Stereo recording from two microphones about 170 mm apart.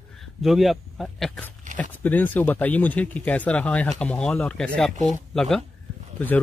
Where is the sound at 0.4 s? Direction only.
Centre (ahead or behind).